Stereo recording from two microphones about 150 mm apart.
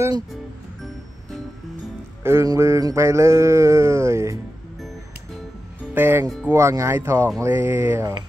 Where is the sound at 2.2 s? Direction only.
20° right (ahead or behind).